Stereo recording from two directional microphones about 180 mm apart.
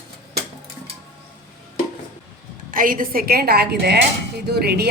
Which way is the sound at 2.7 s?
50° right (ahead or behind).